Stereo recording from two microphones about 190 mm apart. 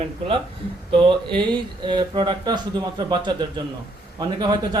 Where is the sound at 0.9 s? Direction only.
25° right (ahead or behind).